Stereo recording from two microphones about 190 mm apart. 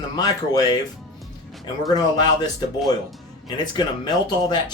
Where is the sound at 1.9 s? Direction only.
20° left (ahead or behind).